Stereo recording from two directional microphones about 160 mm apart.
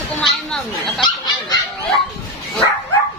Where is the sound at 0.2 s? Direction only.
Centre (ahead or behind).